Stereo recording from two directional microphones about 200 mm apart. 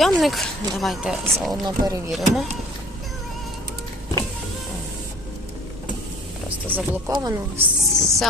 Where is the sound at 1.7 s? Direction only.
20° right (ahead or behind).